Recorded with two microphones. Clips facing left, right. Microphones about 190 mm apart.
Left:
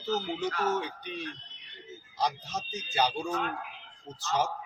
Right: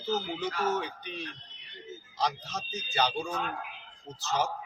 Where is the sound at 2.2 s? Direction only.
10° left (ahead or behind).